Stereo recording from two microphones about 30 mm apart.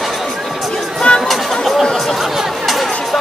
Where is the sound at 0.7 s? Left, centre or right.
Left.